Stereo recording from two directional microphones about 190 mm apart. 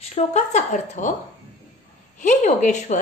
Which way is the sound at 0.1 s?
35° left (ahead or behind).